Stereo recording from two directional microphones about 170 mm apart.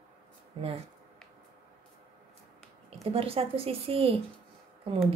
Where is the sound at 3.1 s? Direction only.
35° right (ahead or behind).